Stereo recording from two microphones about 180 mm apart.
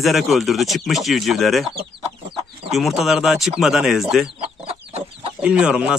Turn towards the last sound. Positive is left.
turn(degrees=-5)  # may be behind; listen again after turning